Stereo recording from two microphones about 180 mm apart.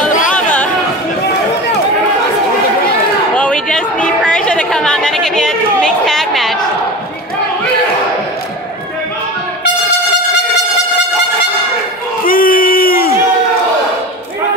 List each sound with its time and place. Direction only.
0.3 s chatter: 10° left (ahead or behind)
3.3 s a sound: 5° left (ahead or behind)
4.3 s chatter: 5° left (ahead or behind)
12.3 s crowd: 50° left (ahead or behind)